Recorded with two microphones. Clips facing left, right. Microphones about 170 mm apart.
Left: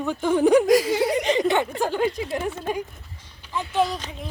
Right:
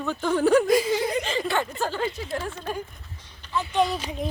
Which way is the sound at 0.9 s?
75° left (ahead or behind).